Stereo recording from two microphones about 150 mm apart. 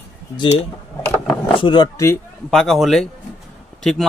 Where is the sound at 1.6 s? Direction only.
30° left (ahead or behind).